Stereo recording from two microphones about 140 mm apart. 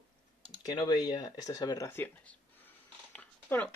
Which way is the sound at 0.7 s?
30° left (ahead or behind).